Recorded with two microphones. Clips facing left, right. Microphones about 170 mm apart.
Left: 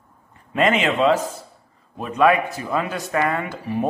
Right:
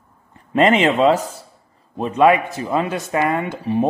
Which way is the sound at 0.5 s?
35° right (ahead or behind).